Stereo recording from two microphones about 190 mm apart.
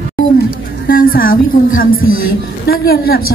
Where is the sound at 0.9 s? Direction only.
50° left (ahead or behind).